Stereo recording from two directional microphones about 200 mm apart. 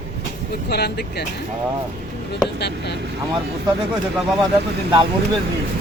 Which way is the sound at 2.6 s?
55° left (ahead or behind).